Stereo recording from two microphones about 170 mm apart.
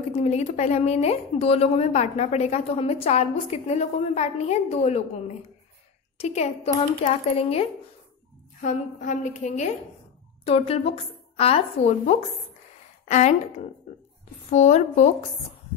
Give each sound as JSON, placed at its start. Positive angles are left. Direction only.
{"t": 0.1, "sound": "a woman's voice", "side_deg": 40}
{"t": 8.5, "sound": "a woman's voice", "side_deg": 45}
{"t": 14.5, "sound": "a woman's voice", "side_deg": 40}